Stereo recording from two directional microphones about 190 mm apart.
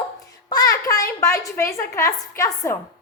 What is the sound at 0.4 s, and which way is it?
A child's voice, 20° left (ahead or behind).